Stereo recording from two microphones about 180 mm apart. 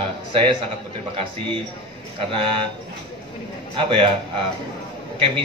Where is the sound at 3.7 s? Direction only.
30° right (ahead or behind).